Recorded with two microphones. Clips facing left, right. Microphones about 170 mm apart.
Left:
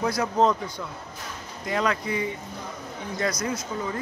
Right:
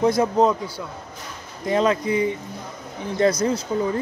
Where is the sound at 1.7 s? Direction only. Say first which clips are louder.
Right 6 dB; 25° right (ahead or behind).